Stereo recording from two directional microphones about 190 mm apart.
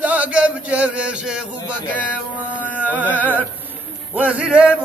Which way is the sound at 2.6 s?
10° left (ahead or behind).